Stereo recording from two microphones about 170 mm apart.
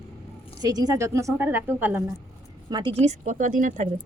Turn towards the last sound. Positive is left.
turn(degrees=-50)  # may be behind; listen again after turning